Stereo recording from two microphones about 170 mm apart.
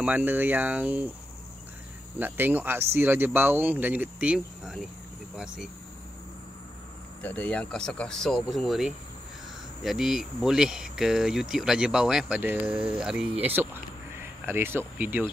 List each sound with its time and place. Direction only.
0.0 s speech: 10° right (ahead or behind)
2.1 s speech: 10° right (ahead or behind)
7.2 s speech: 10° left (ahead or behind); by 15.2 s 10° right (ahead or behind)